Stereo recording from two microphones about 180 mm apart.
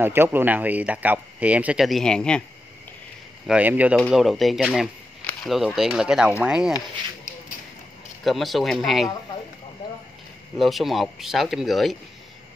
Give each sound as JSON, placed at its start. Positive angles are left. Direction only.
{"t": 0.0, "sound": "speech", "side_deg": -10}
{"t": 3.4, "sound": "speech", "side_deg": -10}
{"t": 7.3, "sound": "a sound", "side_deg": 45}
{"t": 8.2, "sound": "speech", "side_deg": 0}
{"t": 10.6, "sound": "speech", "side_deg": 0}